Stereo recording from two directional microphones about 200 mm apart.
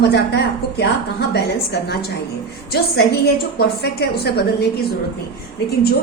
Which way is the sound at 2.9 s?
55° left (ahead or behind).